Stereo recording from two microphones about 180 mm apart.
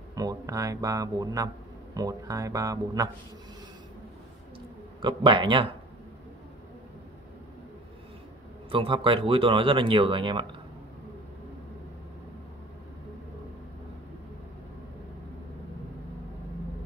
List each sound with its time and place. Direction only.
0.1 s speech: 20° right (ahead or behind)
5.0 s speech: 25° right (ahead or behind)
8.6 s speech: 30° right (ahead or behind)